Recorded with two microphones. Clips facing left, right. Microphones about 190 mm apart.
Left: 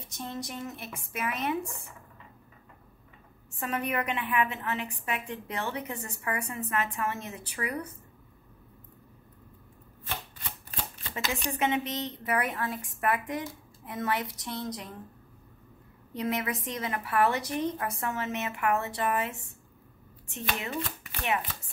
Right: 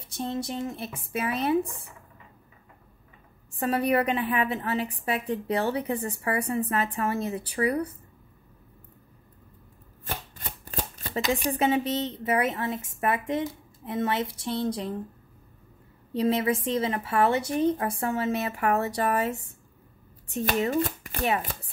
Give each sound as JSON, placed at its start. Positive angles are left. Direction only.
{"t": 0.1, "sound": "a woman's voice", "side_deg": -30}
{"t": 3.5, "sound": "a woman's voice", "side_deg": -35}
{"t": 10.0, "sound": "shuffling cards", "side_deg": -40}
{"t": 11.1, "sound": "speech", "side_deg": -15}
{"t": 11.5, "sound": "speech", "side_deg": -30}
{"t": 16.1, "sound": "speech", "side_deg": -30}